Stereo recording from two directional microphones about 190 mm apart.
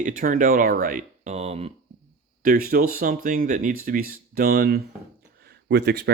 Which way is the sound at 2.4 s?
50° right (ahead or behind).